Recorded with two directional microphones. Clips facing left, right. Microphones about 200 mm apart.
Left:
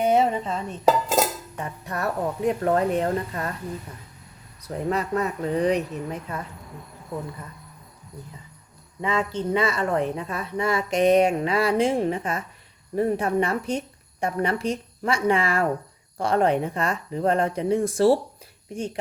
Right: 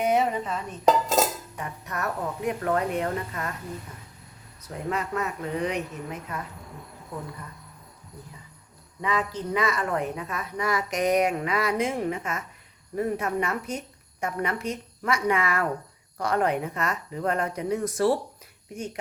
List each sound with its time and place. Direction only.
0.0 s speech: 30° left (ahead or behind)
0.9 s dishes: 5° left (ahead or behind)
1.5 s a woman's voice: 30° left (ahead or behind)
4.9 s a woman's voice: 35° left (ahead or behind)
9.0 s a woman's voice: 25° left (ahead or behind)